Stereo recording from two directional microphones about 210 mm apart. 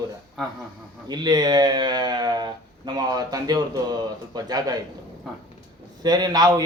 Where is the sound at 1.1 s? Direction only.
20° right (ahead or behind).